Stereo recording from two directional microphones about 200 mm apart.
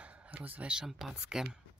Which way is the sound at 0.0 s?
5° right (ahead or behind).